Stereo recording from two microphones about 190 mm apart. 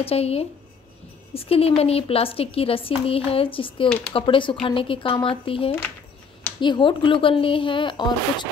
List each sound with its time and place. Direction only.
0.0 s a woman's voice: 30° left (ahead or behind)